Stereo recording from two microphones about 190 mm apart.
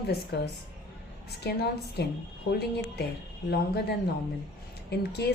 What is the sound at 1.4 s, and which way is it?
A woman's voice, 60° left (ahead or behind).